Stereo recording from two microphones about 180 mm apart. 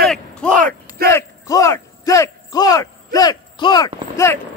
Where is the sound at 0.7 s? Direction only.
55° right (ahead or behind).